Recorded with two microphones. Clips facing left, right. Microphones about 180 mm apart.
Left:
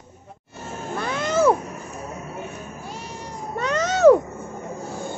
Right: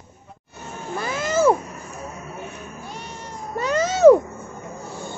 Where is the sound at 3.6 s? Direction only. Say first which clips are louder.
Right 2 dB; 5° right (ahead or behind).